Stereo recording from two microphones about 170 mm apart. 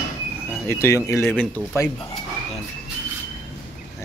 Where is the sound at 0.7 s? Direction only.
15° left (ahead or behind).